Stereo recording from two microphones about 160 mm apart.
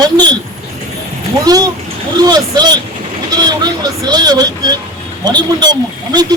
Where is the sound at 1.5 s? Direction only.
25° right (ahead or behind).